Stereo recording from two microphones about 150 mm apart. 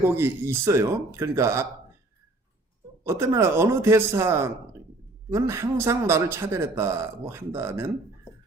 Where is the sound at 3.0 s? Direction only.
20° right (ahead or behind).